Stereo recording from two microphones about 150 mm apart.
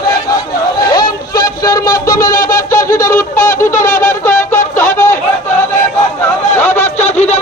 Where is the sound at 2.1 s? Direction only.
65° left (ahead or behind).